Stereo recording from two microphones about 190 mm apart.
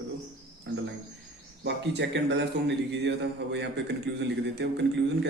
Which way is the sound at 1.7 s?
65° right (ahead or behind).